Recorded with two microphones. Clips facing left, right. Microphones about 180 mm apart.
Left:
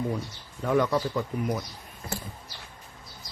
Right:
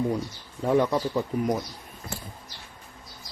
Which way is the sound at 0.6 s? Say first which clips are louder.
Right 2 dB; 30° right (ahead or behind).